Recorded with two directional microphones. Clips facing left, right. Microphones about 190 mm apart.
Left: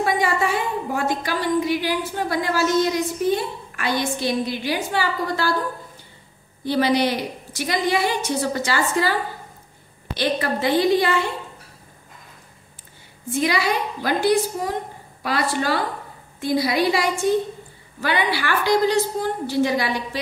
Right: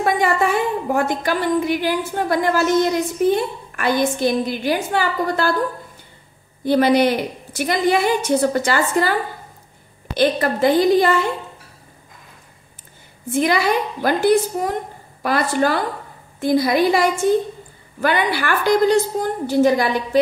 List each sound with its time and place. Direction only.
0.0 s a woman's voice: 50° right (ahead or behind)
6.6 s a woman's voice: 50° right (ahead or behind)
10.1 s a woman's voice: 45° right (ahead or behind)
13.3 s a woman's voice: 50° right (ahead or behind)